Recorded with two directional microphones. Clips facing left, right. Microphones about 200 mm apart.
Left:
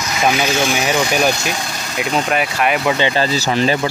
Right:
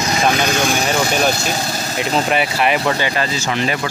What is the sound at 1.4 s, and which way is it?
Vehicle, 35° right (ahead or behind).